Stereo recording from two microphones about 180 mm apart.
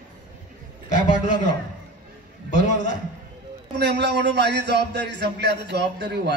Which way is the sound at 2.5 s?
45° left (ahead or behind).